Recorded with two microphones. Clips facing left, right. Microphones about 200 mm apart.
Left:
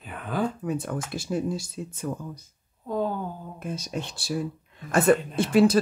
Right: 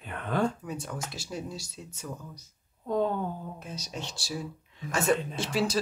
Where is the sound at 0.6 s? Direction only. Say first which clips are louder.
Left 7 dB; 55° left (ahead or behind).